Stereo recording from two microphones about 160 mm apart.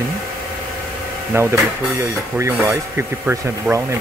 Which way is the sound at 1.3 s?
15° right (ahead or behind).